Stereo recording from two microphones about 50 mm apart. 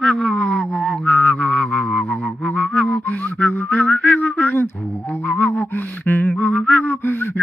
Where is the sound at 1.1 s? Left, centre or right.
Left.